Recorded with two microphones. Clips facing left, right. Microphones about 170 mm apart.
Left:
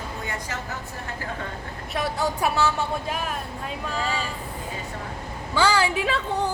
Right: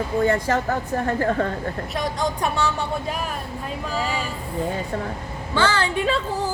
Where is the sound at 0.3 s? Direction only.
55° right (ahead or behind).